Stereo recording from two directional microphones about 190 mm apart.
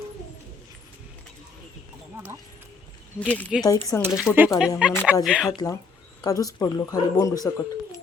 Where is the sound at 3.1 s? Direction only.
5° left (ahead or behind).